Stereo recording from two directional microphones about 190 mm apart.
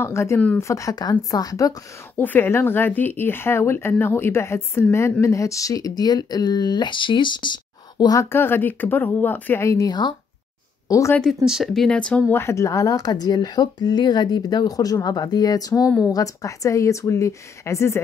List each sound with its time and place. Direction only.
0.0 s a woman's voice: 15° left (ahead or behind)
11.1 s a woman's voice: centre (ahead or behind); by 18.0 s 15° left (ahead or behind)